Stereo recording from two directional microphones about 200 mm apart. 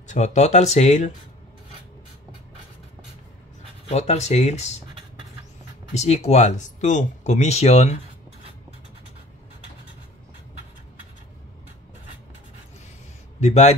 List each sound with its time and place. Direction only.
0.0 s speech: 35° left (ahead or behind)
3.9 s speech: 35° left (ahead or behind)
5.9 s speech: 35° left (ahead or behind)
13.4 s a man's voice: 35° left (ahead or behind)